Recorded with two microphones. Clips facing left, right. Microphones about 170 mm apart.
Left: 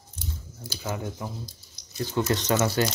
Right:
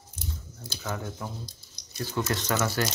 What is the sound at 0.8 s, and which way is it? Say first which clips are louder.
Speech: left 2 dB; 15° left (ahead or behind).